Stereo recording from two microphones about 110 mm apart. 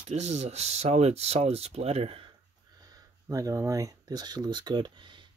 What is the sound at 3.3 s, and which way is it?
Speech, 30° right (ahead or behind).